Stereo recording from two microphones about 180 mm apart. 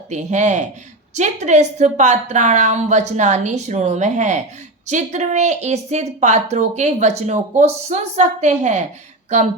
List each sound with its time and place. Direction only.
0.1 s a woman's voice: 40° right (ahead or behind)